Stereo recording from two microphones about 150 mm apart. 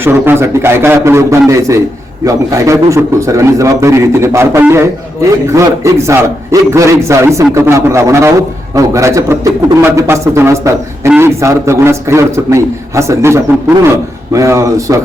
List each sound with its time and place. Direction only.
0.0 s a man's voice: 15° right (ahead or behind)